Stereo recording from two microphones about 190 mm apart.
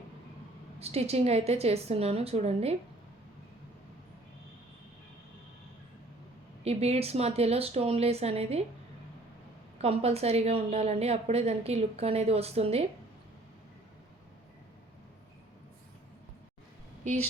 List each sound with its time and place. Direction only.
0.8 s a woman's voice: 35° right (ahead or behind)
6.7 s a woman's voice: 35° right (ahead or behind)
9.8 s a woman's voice: 30° right (ahead or behind)
17.0 s speech: 40° right (ahead or behind)